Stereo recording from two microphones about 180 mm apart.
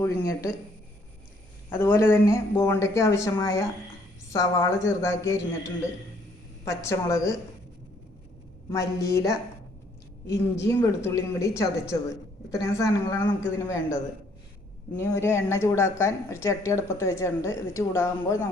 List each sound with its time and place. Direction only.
0.0 s a woman's voice: 15° left (ahead or behind)
1.7 s a woman's voice: 10° left (ahead or behind)
6.7 s a woman's voice: 15° left (ahead or behind)
8.7 s a woman's voice: 15° left (ahead or behind)